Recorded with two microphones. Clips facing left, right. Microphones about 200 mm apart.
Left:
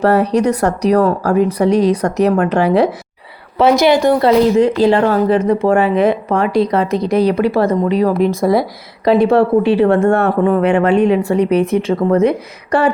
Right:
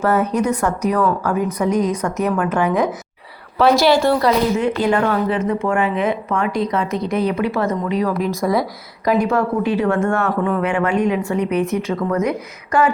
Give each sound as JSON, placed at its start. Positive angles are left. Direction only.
{"t": 0.0, "sound": "a woman's voice", "side_deg": 35}
{"t": 0.3, "sound": "speech", "side_deg": 70}
{"t": 0.9, "sound": "a woman's voice", "side_deg": 40}
{"t": 1.4, "sound": "speech", "side_deg": 75}
{"t": 2.5, "sound": "a woman's voice", "side_deg": 35}
{"t": 3.6, "sound": "a woman's voice", "side_deg": 20}
{"t": 4.3, "sound": "a woman's voice", "side_deg": 35}